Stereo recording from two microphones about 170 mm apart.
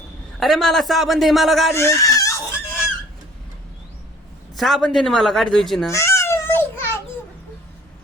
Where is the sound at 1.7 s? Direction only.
15° left (ahead or behind).